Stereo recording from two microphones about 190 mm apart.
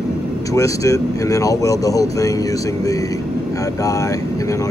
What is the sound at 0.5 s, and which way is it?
Speech, 15° left (ahead or behind).